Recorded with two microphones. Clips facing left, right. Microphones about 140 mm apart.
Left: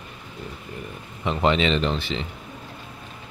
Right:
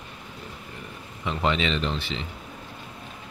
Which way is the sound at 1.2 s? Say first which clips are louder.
Left 4 dB; 25° left (ahead or behind).